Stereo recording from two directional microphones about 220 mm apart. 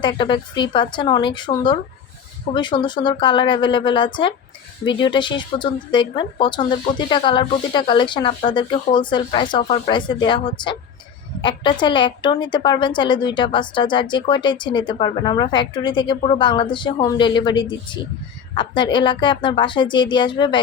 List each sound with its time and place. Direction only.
0.0 s a woman's voice: 20° left (ahead or behind)